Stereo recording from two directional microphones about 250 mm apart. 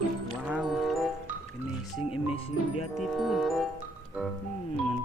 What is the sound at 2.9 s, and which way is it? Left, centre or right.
Music, centre.